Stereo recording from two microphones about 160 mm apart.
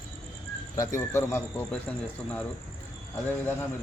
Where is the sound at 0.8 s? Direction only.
15° left (ahead or behind).